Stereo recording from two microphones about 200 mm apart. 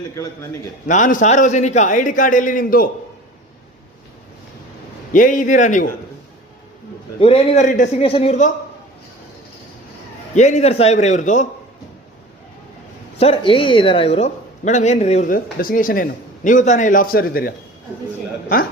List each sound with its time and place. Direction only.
0.9 s speech: 40° left (ahead or behind)
5.1 s speech: 40° left (ahead or behind)
7.2 s speech: 30° left (ahead or behind)
10.3 s speech: 35° left (ahead or behind)
13.1 s a woman's voice: 30° left (ahead or behind); by 18.7 s 45° left (ahead or behind)